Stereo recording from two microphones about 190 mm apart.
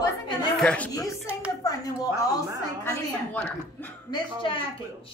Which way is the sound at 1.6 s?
20° left (ahead or behind).